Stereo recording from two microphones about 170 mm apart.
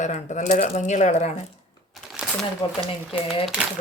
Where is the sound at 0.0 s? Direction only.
45° left (ahead or behind).